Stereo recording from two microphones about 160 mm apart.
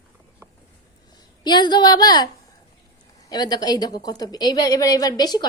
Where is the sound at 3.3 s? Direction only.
25° left (ahead or behind).